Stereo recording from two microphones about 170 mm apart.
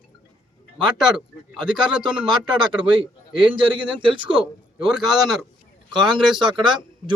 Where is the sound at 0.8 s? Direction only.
5° right (ahead or behind).